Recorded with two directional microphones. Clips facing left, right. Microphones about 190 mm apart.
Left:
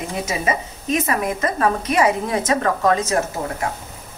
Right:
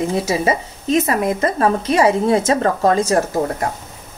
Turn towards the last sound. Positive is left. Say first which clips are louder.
# right 4 dB
turn(degrees=-35)  # may be behind; listen again after turning